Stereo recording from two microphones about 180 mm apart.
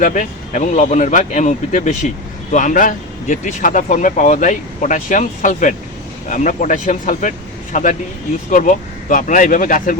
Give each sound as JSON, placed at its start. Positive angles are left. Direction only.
{"t": 0.0, "sound": "speech", "side_deg": 45}